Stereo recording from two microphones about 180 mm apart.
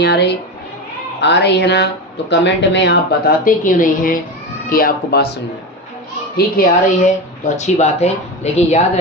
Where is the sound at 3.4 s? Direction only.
50° left (ahead or behind).